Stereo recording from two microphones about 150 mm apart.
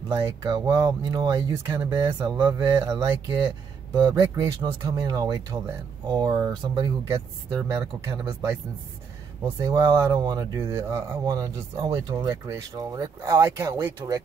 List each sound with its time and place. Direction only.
0.1 s speech: 25° right (ahead or behind)
7.1 s speech: 20° right (ahead or behind)